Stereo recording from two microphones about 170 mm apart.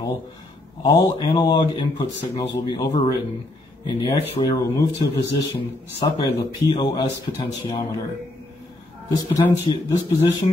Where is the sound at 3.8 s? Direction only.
30° left (ahead or behind).